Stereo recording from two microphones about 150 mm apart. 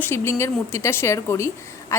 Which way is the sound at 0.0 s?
15° left (ahead or behind).